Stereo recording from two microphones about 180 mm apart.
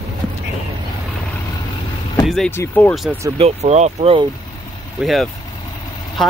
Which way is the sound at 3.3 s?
35° right (ahead or behind).